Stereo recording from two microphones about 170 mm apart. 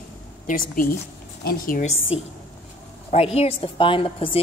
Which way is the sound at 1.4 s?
65° left (ahead or behind).